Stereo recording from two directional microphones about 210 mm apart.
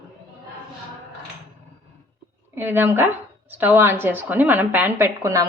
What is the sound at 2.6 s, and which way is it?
A woman's voice, 10° right (ahead or behind).